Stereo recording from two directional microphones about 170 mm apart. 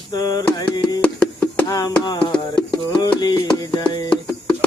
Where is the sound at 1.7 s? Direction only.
25° left (ahead or behind).